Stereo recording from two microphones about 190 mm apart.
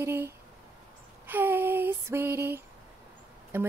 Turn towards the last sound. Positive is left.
turn(degrees=-10)  # may be behind; listen again after turning